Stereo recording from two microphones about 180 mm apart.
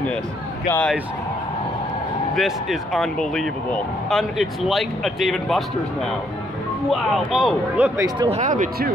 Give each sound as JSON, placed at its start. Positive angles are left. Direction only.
{"t": 0.7, "sound": "speech", "side_deg": 10}
{"t": 2.3, "sound": "speech", "side_deg": 0}
{"t": 6.9, "sound": "speech", "side_deg": 0}
{"t": 8.4, "sound": "speech", "side_deg": -45}